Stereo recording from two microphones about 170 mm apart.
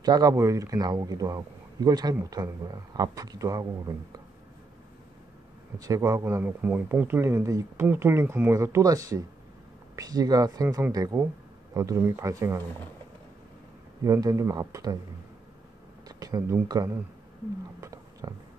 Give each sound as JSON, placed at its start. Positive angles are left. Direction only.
{"t": 0.0, "sound": "speech", "side_deg": -20}
{"t": 5.8, "sound": "speech", "side_deg": -20}
{"t": 14.0, "sound": "speech", "side_deg": -20}
{"t": 16.2, "sound": "speech", "side_deg": -20}
{"t": 17.7, "sound": "a sound", "side_deg": -20}